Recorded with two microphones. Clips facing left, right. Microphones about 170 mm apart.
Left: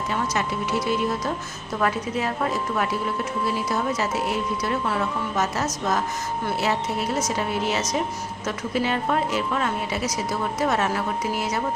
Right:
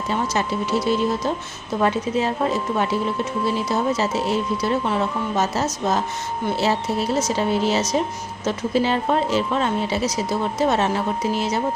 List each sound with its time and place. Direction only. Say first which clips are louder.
0.1 s speech: right 4 dB; 30° right (ahead or behind)